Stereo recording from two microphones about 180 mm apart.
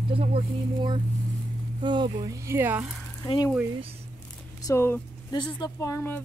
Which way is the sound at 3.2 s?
20° left (ahead or behind).